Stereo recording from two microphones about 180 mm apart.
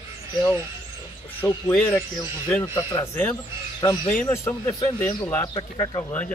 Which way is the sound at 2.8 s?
20° left (ahead or behind).